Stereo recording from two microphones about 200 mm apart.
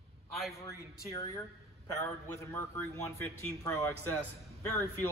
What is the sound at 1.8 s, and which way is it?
A man's voice, 15° left (ahead or behind).